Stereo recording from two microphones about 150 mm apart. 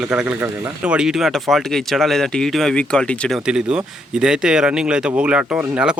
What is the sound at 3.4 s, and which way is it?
Speech, 5° right (ahead or behind).